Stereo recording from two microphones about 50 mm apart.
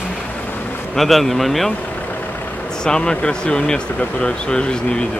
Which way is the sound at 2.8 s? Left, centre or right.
Centre.